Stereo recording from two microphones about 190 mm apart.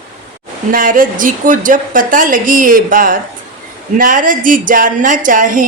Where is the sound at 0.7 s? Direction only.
45° right (ahead or behind).